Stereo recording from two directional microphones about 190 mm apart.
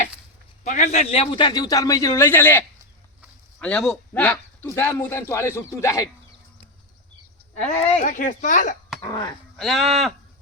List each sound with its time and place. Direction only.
0.6 s a man's voice: 40° left (ahead or behind); by 6.1 s 15° left (ahead or behind)
7.5 s speech: 35° left (ahead or behind)
9.6 s speech: centre (ahead or behind)